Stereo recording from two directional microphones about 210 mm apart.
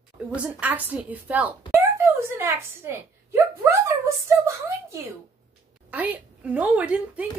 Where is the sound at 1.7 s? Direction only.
10° right (ahead or behind).